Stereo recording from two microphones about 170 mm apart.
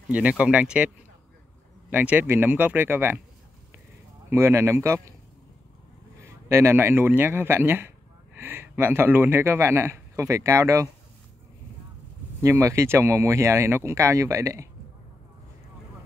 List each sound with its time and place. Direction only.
0.1 s speech: 5° right (ahead or behind)
4.3 s speech: 15° right (ahead or behind)
6.2 s speech: 15° right (ahead or behind)
12.4 s speech: 15° right (ahead or behind)